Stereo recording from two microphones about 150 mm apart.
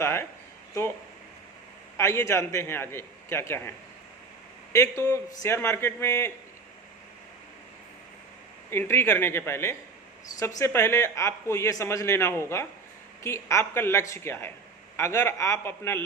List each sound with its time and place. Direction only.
0.0 s a man's voice: 15° left (ahead or behind)
2.0 s a man's voice: 20° left (ahead or behind)
8.7 s a man's voice: 15° left (ahead or behind)